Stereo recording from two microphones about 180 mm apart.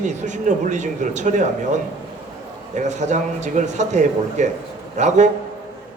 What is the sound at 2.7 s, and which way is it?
Speech, 40° right (ahead or behind).